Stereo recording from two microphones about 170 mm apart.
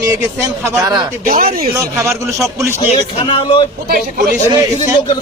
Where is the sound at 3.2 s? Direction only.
30° left (ahead or behind).